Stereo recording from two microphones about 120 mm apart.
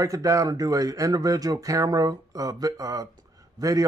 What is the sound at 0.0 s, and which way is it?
Speech, 30° right (ahead or behind).